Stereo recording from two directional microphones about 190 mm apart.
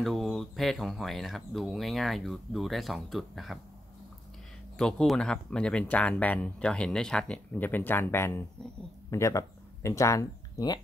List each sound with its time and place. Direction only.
0.0 s speech: centre (ahead or behind)
4.7 s speech: 5° left (ahead or behind)